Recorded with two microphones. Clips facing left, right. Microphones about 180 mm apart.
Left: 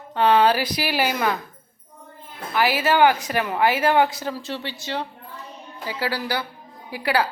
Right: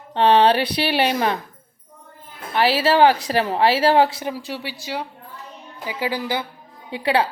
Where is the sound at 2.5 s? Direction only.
30° right (ahead or behind).